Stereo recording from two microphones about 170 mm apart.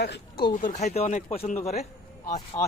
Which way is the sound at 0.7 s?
40° left (ahead or behind).